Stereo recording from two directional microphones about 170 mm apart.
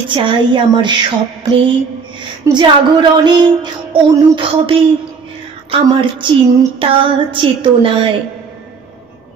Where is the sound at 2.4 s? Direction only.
25° right (ahead or behind).